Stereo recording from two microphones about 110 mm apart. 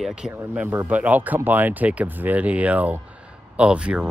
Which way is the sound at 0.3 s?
20° right (ahead or behind).